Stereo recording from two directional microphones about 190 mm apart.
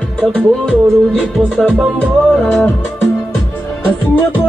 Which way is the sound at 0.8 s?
10° right (ahead or behind).